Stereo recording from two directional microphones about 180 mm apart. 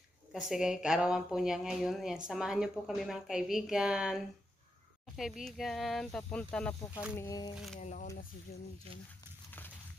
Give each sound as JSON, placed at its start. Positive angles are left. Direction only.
{"t": 0.3, "sound": "speech", "side_deg": 0}
{"t": 5.4, "sound": "speech", "side_deg": 0}
{"t": 6.9, "sound": "speech", "side_deg": -5}
{"t": 7.2, "sound": "speech", "side_deg": 20}
{"t": 7.5, "sound": "speech", "side_deg": 0}
{"t": 7.8, "sound": "speech", "side_deg": 45}